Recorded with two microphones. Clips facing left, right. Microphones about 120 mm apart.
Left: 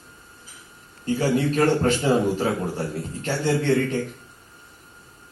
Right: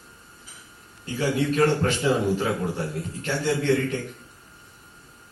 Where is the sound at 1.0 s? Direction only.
40° left (ahead or behind).